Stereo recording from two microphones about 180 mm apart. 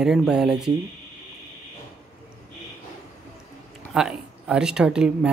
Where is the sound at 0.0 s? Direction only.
5° right (ahead or behind).